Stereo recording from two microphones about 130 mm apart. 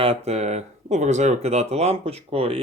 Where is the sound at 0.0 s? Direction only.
50° right (ahead or behind).